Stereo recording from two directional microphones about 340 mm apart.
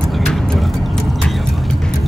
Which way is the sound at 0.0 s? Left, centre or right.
Centre.